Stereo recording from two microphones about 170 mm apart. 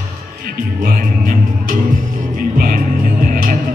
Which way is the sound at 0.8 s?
60° right (ahead or behind).